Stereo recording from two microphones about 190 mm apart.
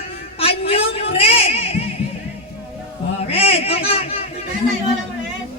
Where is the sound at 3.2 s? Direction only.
30° left (ahead or behind).